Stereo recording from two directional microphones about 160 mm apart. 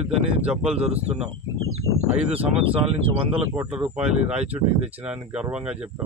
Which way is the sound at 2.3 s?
35° right (ahead or behind).